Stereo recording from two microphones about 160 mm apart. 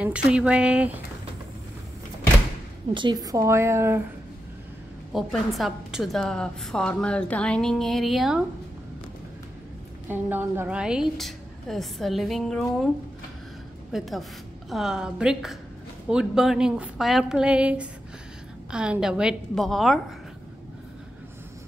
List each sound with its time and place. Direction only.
0.0 s speech: 5° right (ahead or behind)
2.9 s a woman's voice: 30° right (ahead or behind)
5.1 s a woman's voice: centre (ahead or behind)
10.0 s a woman's voice: 10° right (ahead or behind)
13.9 s a woman's voice: centre (ahead or behind)